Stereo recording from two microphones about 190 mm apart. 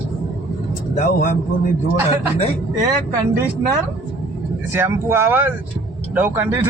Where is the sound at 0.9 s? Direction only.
40° left (ahead or behind).